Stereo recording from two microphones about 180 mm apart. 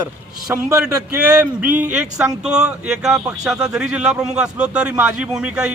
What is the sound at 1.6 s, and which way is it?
A man's voice, 10° right (ahead or behind).